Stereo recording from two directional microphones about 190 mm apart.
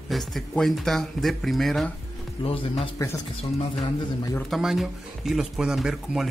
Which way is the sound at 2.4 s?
30° left (ahead or behind).